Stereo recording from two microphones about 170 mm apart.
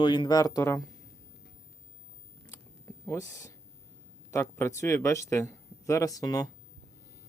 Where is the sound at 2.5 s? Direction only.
20° left (ahead or behind).